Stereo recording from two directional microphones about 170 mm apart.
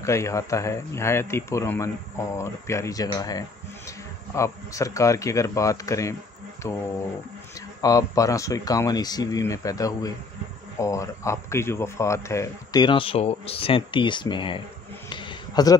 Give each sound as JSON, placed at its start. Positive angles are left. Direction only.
{"t": 0.0, "sound": "speech", "side_deg": 15}
{"t": 7.8, "sound": "speech", "side_deg": 20}
{"t": 15.0, "sound": "a sound", "side_deg": 25}